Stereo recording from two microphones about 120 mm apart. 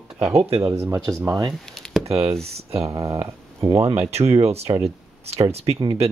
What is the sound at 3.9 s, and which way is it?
Speech, 60° right (ahead or behind).